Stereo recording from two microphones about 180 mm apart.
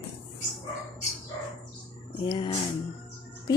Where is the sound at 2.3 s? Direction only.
25° left (ahead or behind).